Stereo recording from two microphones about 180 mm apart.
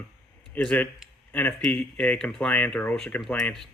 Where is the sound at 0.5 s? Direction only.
10° left (ahead or behind).